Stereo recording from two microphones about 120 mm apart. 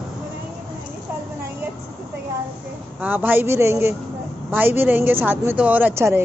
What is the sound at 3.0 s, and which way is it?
A man's voice, 15° right (ahead or behind).